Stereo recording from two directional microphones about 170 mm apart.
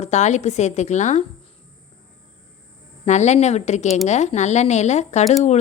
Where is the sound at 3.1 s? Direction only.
40° left (ahead or behind).